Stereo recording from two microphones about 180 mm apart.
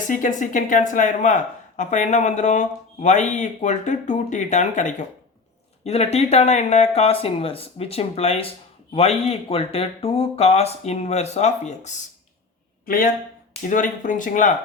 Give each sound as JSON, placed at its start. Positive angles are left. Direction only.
{"t": 0.1, "sound": "speech", "side_deg": 45}
{"t": 12.8, "sound": "a man's voice", "side_deg": 50}